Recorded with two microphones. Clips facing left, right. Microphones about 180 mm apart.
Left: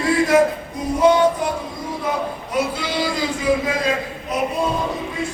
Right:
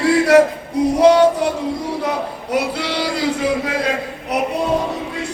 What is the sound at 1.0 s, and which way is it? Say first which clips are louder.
Music: right 3 dB; 75° right (ahead or behind).